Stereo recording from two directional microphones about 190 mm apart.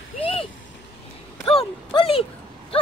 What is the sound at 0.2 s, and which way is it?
Vehicle, 30° left (ahead or behind).